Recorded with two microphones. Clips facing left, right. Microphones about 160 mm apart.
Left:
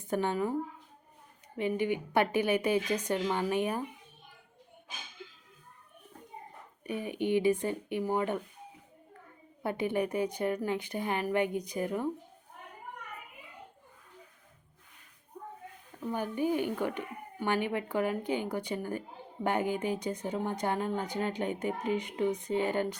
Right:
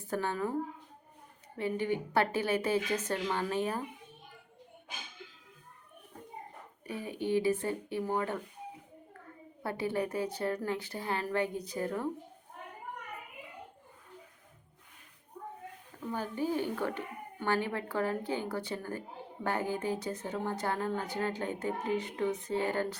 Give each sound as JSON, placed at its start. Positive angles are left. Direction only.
{"t": 0.0, "sound": "a woman's voice", "side_deg": 20}
{"t": 1.5, "sound": "a woman's voice", "side_deg": 15}
{"t": 6.8, "sound": "a woman's voice", "side_deg": 20}
{"t": 9.6, "sound": "a woman's voice", "side_deg": 20}
{"t": 16.1, "sound": "a woman's voice", "side_deg": 15}